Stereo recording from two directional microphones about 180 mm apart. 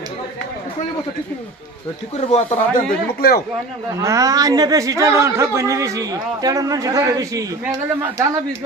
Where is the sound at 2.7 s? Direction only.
55° left (ahead or behind).